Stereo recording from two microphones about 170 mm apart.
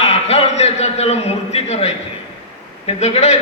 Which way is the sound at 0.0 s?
35° left (ahead or behind).